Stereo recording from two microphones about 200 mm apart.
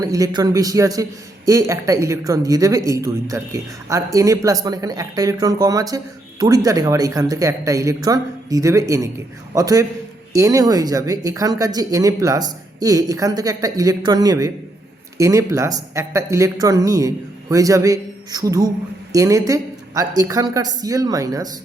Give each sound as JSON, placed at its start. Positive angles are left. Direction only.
{"t": 0.0, "sound": "speech", "side_deg": -15}